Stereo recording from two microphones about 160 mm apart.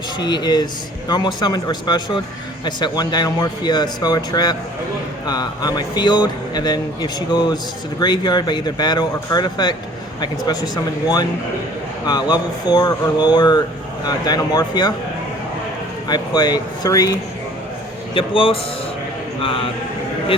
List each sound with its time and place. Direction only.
0.2 s speech: 25° left (ahead or behind)
12.0 s speech: 25° left (ahead or behind)
16.0 s speech: 25° left (ahead or behind)
18.1 s speech: 35° left (ahead or behind)